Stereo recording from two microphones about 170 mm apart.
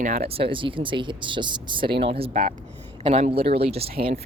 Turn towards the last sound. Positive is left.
turn(degrees=-35)  # may be behind; listen again after turning